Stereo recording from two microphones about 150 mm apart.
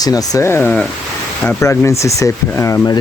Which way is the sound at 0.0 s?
25° left (ahead or behind).